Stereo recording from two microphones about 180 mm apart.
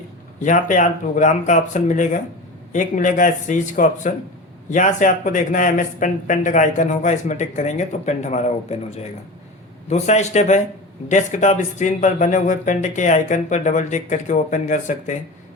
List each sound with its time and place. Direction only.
0.4 s a man's voice: 45° left (ahead or behind)